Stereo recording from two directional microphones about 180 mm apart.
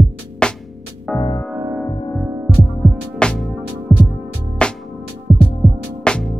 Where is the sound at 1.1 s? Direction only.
20° left (ahead or behind).